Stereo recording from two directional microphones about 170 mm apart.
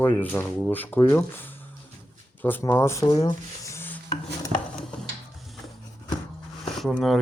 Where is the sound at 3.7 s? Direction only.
15° left (ahead or behind).